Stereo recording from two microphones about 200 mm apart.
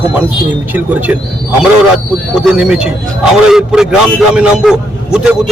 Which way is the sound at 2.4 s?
5° right (ahead or behind).